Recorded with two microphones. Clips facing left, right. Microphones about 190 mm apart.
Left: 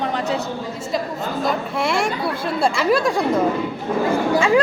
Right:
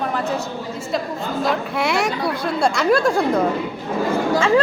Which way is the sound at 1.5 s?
Centre (ahead or behind).